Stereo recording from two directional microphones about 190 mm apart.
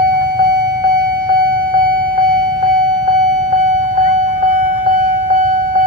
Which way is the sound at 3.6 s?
40° right (ahead or behind).